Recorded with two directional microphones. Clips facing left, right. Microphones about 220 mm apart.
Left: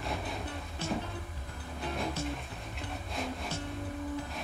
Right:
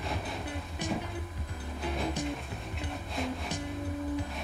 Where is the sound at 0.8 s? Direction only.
15° right (ahead or behind).